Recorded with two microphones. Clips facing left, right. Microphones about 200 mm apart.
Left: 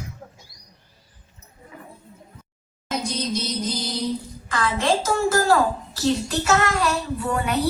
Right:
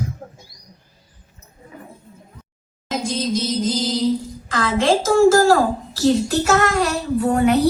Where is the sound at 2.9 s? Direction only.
90° right.